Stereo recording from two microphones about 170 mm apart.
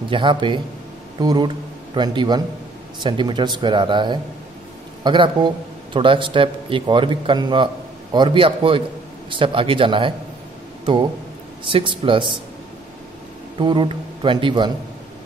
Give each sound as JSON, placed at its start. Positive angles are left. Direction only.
{"t": 0.1, "sound": "a man's voice", "side_deg": -30}
{"t": 13.6, "sound": "speech", "side_deg": -30}